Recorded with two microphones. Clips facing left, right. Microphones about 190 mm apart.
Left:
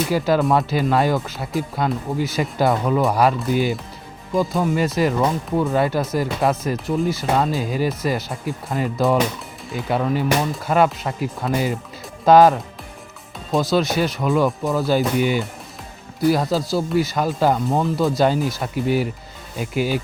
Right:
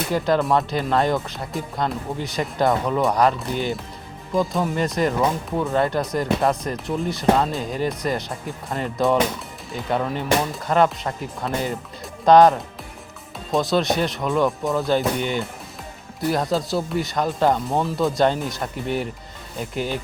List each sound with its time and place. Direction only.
0.1 s speech: 5° left (ahead or behind)